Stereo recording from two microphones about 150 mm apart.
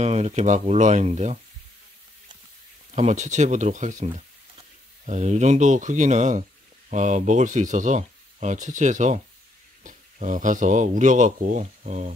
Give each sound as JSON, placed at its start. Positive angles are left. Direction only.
{"t": 0.0, "sound": "speech", "side_deg": -50}
{"t": 2.9, "sound": "speech", "side_deg": -50}